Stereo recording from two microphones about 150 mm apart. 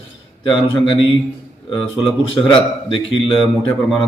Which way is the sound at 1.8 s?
30° left (ahead or behind).